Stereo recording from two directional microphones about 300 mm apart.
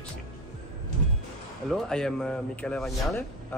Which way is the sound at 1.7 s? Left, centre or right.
Centre.